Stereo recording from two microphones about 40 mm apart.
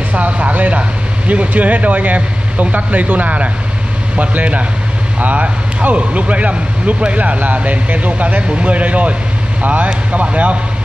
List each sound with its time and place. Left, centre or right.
0.1 s speech: right